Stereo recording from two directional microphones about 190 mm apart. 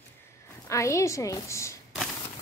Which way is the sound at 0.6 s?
15° left (ahead or behind).